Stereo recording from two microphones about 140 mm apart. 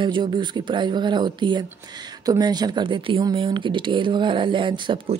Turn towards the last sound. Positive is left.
turn(degrees=-35)  # may be behind; listen again after turning